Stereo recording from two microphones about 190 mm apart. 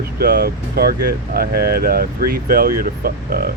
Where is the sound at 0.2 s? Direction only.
55° right (ahead or behind).